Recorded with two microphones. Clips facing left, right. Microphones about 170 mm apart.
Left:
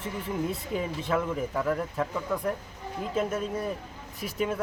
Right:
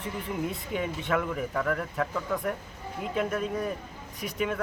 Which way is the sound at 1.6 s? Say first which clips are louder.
Left 1 dB; 20° left (ahead or behind).